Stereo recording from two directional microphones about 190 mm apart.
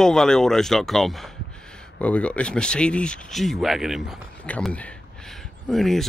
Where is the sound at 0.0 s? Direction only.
5° left (ahead or behind).